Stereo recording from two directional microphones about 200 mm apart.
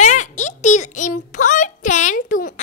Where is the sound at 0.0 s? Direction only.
35° left (ahead or behind).